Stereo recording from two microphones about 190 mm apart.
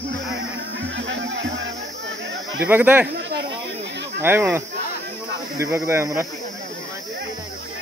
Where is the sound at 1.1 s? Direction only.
80° right.